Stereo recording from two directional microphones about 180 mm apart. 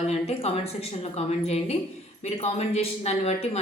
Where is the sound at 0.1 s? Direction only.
35° left (ahead or behind).